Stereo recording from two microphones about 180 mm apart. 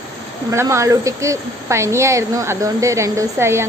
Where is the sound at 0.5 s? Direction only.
15° right (ahead or behind).